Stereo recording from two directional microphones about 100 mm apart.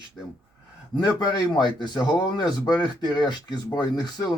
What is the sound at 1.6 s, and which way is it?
A man's voice, 50° left (ahead or behind).